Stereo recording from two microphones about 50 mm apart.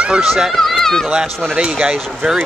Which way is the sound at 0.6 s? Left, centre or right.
Centre.